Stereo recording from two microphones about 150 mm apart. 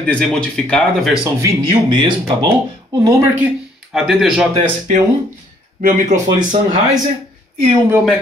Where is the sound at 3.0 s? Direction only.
20° right (ahead or behind).